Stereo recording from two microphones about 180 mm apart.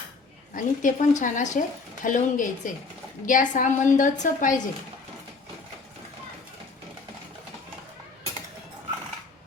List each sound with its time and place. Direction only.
0.5 s a woman's voice: 45° left (ahead or behind)